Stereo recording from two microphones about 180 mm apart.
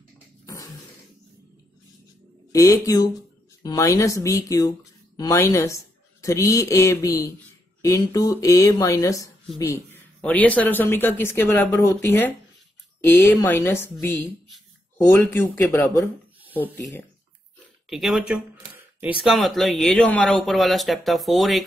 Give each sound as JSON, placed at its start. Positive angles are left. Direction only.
{"t": 2.5, "sound": "speech", "side_deg": 20}
{"t": 15.0, "sound": "speech", "side_deg": 10}
{"t": 17.8, "sound": "speech", "side_deg": 0}